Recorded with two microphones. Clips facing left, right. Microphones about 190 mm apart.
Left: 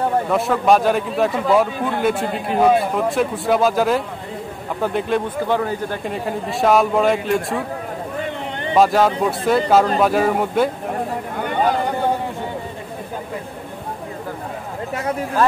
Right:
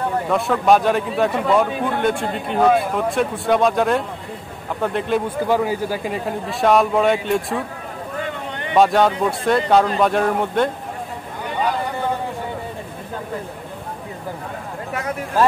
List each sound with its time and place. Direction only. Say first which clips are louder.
0.3 s a man's voice: right 1 dB; centre (ahead or behind)
8.7 s a man's voice: even; centre (ahead or behind)
11.3 s a sound: left 3 dB; 60° left (ahead or behind)